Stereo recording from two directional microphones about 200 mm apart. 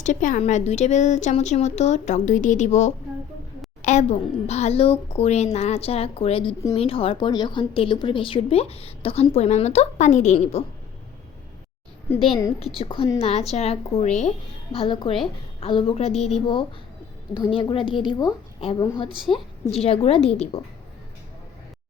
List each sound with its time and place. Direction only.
0.0 s a woman's voice: 40° left (ahead or behind)
12.5 s a woman's voice: 30° left (ahead or behind)